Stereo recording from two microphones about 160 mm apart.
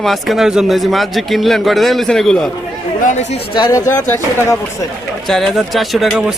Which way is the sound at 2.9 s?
50° left (ahead or behind).